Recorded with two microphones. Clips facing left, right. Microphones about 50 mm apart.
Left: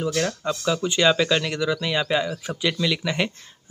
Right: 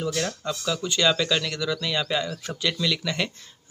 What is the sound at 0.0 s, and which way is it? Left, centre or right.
Speech, centre.